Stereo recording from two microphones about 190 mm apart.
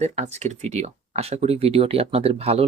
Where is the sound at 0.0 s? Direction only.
35° right (ahead or behind).